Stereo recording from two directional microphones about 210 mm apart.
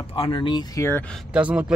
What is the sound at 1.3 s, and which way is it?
Speech, 5° right (ahead or behind).